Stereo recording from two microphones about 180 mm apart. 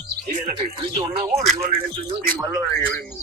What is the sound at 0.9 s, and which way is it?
Speech, 25° right (ahead or behind).